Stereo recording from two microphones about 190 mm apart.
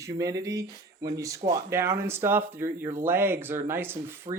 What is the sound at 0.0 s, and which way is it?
Speech, 15° right (ahead or behind).